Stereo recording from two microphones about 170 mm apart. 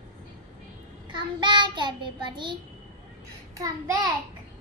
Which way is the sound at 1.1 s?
30° right (ahead or behind).